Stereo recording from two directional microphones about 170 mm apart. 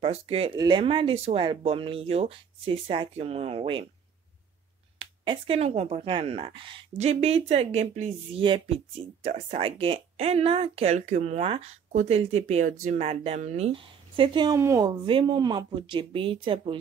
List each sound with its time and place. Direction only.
0.0 s speech: 35° right (ahead or behind)
4.9 s speech: 30° right (ahead or behind)